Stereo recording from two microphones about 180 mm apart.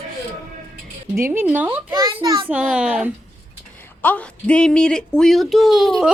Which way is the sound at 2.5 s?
5° right (ahead or behind).